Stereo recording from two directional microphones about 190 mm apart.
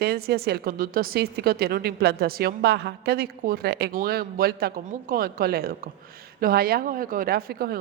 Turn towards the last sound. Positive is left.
turn(degrees=-55)  # may be behind; listen again after turning